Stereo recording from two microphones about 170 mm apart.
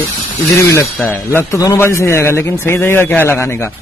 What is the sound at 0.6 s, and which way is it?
Speech, 15° left (ahead or behind).